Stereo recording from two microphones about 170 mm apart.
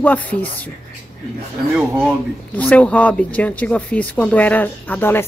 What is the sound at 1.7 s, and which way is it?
Speech, 5° right (ahead or behind).